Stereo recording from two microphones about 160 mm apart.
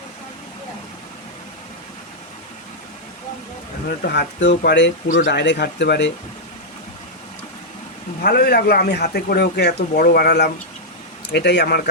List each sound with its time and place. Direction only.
3.8 s speech: 80° left
8.2 s speech: 85° left